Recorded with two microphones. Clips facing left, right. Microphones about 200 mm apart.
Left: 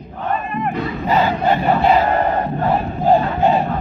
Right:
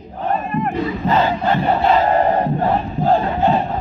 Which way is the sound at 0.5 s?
Centre (ahead or behind).